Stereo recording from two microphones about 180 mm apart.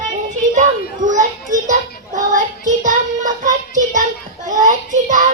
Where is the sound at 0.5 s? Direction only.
45° right (ahead or behind).